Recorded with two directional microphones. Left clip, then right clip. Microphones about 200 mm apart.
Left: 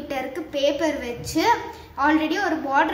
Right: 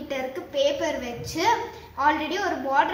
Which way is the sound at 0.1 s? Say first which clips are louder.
Left 1 dB; 35° left (ahead or behind).